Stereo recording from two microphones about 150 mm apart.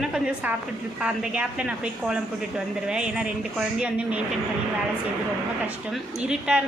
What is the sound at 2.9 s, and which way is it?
A woman's voice, 5° right (ahead or behind).